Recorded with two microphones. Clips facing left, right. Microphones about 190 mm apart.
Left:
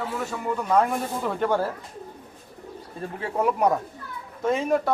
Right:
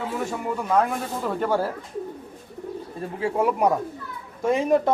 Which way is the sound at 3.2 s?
5° right (ahead or behind).